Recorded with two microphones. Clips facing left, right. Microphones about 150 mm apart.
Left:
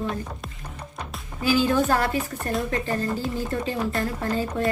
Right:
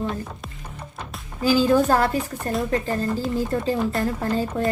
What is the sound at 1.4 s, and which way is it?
Speech, 40° right (ahead or behind).